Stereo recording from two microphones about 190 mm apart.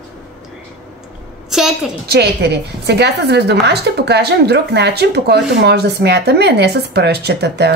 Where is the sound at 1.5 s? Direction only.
Centre (ahead or behind).